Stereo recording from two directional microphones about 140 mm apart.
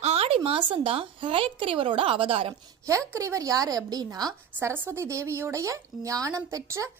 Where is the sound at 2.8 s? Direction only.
20° right (ahead or behind).